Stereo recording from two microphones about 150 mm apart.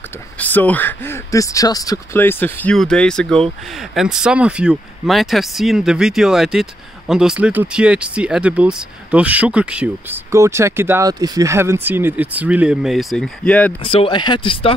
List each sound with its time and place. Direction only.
0.4 s speech: 10° left (ahead or behind)
2.1 s speech: 15° left (ahead or behind)
13.8 s speech: 35° left (ahead or behind)